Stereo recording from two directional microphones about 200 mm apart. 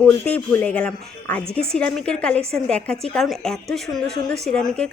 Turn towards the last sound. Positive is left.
turn(degrees=5)  # may be behind; listen again after turning